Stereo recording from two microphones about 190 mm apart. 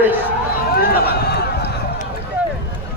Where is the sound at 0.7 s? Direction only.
55° left (ahead or behind).